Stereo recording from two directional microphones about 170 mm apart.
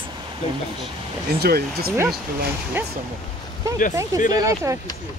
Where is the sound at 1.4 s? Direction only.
65° right (ahead or behind).